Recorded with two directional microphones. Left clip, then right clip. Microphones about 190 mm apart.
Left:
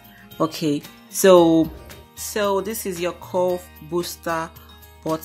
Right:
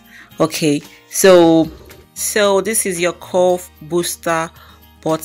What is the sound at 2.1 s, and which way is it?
Speech, 20° right (ahead or behind).